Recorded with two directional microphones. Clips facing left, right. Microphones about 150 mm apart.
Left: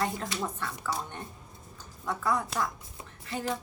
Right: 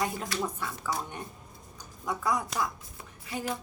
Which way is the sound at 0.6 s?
10° right (ahead or behind).